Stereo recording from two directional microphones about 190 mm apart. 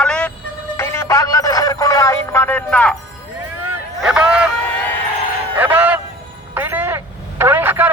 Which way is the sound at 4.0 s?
5° right (ahead or behind).